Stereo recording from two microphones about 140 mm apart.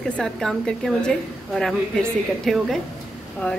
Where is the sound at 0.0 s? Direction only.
5° left (ahead or behind).